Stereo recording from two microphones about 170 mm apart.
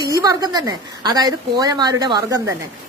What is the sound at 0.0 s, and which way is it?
A woman's voice, 20° right (ahead or behind).